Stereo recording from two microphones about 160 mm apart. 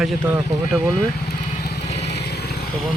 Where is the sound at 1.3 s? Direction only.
80° left.